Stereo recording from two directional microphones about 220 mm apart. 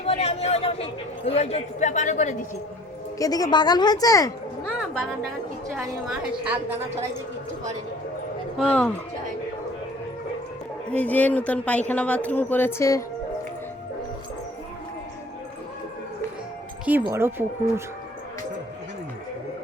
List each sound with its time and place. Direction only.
0.0 s a man's voice: 25° left (ahead or behind)
3.2 s speech: 15° left (ahead or behind)
5.7 s a woman's voice: centre (ahead or behind)
8.5 s a woman's voice: 5° left (ahead or behind)
10.9 s speech: 5° left (ahead or behind)
17.1 s speech: 10° right (ahead or behind)